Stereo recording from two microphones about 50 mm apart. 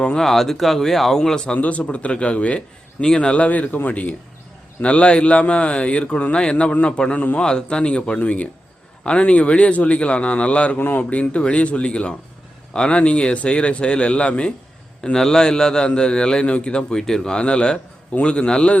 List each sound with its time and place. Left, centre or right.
0.0 s a man's voice: centre
0.3 s speech: centre
1.5 s a man's voice: left
10.8 s speech: left
11.1 s a man's voice: left